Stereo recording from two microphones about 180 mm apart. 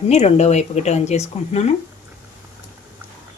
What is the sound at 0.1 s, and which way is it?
Speech, 35° left (ahead or behind).